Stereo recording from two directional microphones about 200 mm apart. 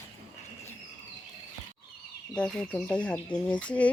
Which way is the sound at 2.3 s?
5° left (ahead or behind).